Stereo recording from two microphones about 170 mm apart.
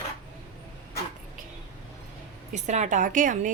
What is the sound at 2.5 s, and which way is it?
A woman's voice, 45° right (ahead or behind).